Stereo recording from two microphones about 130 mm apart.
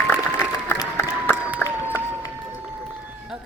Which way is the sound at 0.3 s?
20° left (ahead or behind).